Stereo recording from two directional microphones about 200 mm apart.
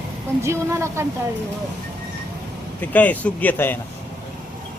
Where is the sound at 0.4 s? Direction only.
15° right (ahead or behind).